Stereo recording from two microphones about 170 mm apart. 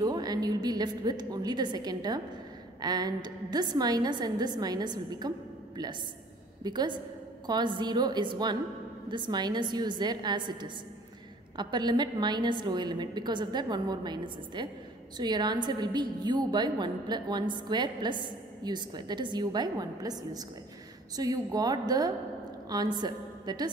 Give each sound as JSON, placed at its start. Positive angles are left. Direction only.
{"t": 0.0, "sound": "a woman's voice", "side_deg": -25}
{"t": 6.6, "sound": "a woman's voice", "side_deg": -25}